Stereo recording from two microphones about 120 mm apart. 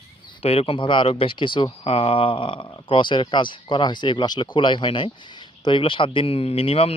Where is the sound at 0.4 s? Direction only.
50° left (ahead or behind).